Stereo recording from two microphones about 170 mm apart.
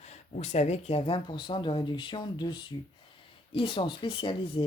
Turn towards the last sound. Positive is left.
turn(degrees=30)  # may be behind; listen again after turning